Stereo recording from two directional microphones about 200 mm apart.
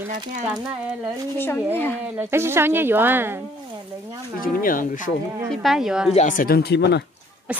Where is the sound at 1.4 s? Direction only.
10° left (ahead or behind).